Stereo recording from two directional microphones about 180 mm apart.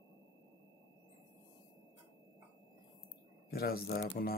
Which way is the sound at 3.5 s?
60° left (ahead or behind).